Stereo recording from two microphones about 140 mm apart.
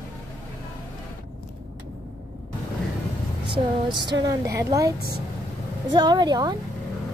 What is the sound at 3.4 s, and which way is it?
A woman's voice, 35° right (ahead or behind).